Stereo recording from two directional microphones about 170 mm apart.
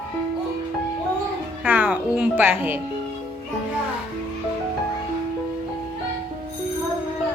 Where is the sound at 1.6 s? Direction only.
10° right (ahead or behind).